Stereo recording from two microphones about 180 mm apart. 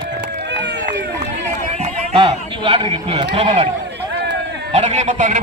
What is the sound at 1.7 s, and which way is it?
A man's voice, 35° right (ahead or behind).